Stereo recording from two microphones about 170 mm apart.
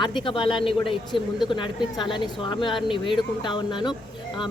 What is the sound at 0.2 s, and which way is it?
A woman's voice, 30° left (ahead or behind).